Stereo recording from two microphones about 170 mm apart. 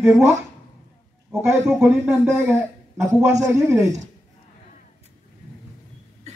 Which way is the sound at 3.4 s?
15° right (ahead or behind).